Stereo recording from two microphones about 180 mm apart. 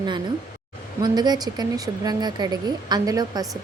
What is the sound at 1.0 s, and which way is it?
A woman's voice, 20° right (ahead or behind).